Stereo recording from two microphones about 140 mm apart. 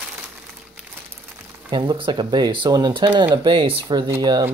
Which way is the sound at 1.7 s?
35° right (ahead or behind).